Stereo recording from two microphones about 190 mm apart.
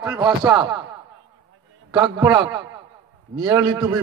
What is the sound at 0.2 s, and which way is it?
Speech, 25° right (ahead or behind).